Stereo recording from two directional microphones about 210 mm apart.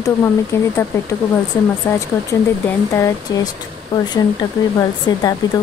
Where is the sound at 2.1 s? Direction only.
15° left (ahead or behind).